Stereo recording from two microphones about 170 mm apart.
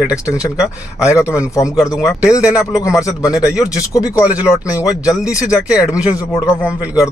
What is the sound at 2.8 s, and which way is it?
Speech, 20° left (ahead or behind).